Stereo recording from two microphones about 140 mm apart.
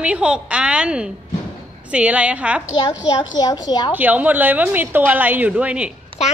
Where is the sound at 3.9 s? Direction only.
10° right (ahead or behind).